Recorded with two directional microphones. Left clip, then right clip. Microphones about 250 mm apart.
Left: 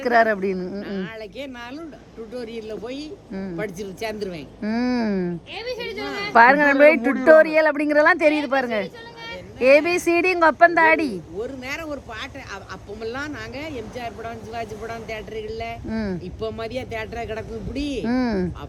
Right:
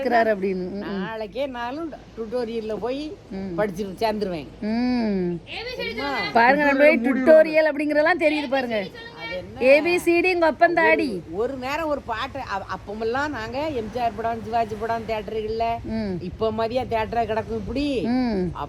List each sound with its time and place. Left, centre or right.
0.1 s a woman's voice: left
0.8 s speech: centre
4.6 s a woman's voice: left
6.3 s a woman's voice: centre
11.3 s speech: centre
15.9 s a woman's voice: left
16.4 s speech: centre
18.1 s a woman's voice: left